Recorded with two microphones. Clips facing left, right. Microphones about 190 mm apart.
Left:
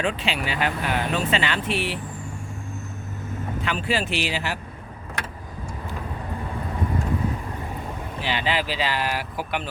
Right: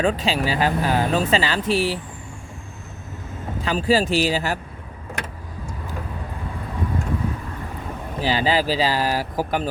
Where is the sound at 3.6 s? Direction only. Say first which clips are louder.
Right 7 dB; 35° right (ahead or behind).